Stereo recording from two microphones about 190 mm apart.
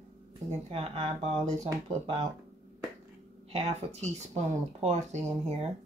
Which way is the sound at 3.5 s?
35° right (ahead or behind).